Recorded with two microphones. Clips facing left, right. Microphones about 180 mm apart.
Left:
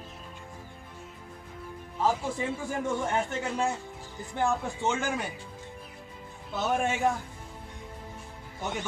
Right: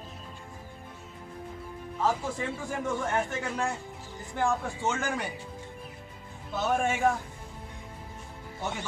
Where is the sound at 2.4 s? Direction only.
10° left (ahead or behind).